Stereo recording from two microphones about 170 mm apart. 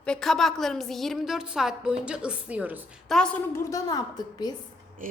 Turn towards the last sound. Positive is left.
turn(degrees=25)  # may be behind; listen again after turning